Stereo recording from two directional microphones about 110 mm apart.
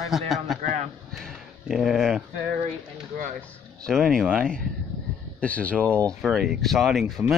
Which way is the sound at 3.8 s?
5° left (ahead or behind).